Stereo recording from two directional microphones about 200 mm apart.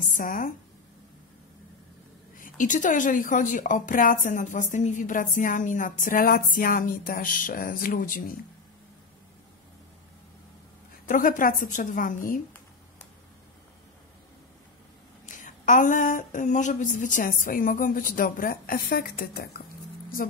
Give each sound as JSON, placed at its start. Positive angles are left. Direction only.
{"t": 0.2, "sound": "a woman's voice", "side_deg": 40}
{"t": 2.3, "sound": "a woman's voice", "side_deg": 40}
{"t": 11.1, "sound": "a woman's voice", "side_deg": 40}
{"t": 15.2, "sound": "a woman's voice", "side_deg": 40}